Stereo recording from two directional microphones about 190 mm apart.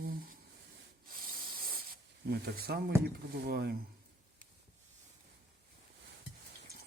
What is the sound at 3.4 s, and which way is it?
Speech, 55° right (ahead or behind).